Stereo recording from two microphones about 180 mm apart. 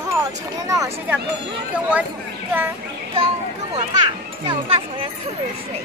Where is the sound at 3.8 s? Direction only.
25° right (ahead or behind).